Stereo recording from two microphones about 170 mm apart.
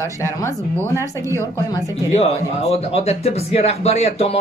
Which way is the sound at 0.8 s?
15° right (ahead or behind).